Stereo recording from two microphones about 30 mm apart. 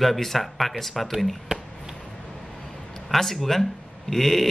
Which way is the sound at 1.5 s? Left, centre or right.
Right.